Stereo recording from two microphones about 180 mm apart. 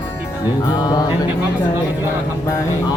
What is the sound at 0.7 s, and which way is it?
Speech, 20° left (ahead or behind).